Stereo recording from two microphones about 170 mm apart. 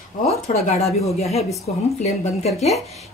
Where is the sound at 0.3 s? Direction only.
40° left (ahead or behind).